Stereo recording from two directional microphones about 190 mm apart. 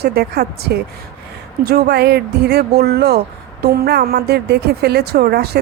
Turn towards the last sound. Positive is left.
turn(degrees=-55)  # may be behind; listen again after turning